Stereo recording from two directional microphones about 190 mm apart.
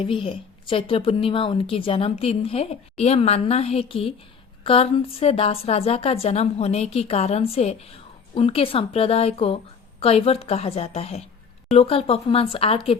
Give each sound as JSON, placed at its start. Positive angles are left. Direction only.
{"t": 0.0, "sound": "a woman's voice", "side_deg": 30}